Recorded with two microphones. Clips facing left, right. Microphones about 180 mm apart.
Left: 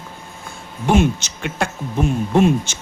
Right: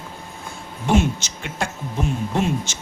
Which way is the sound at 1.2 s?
60° left (ahead or behind).